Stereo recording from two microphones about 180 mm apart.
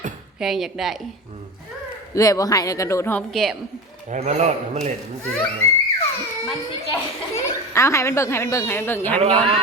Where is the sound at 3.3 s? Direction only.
Centre (ahead or behind).